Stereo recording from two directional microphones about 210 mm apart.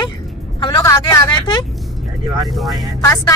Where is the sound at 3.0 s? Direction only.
15° left (ahead or behind).